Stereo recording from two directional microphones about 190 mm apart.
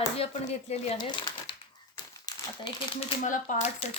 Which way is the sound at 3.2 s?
40° left (ahead or behind).